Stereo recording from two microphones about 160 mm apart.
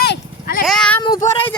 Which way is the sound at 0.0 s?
90° left.